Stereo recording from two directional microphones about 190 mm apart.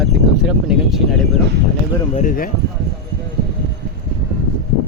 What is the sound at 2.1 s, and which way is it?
Speech, 45° left (ahead or behind).